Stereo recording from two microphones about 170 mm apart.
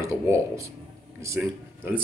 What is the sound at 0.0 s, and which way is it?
Speech, 15° right (ahead or behind).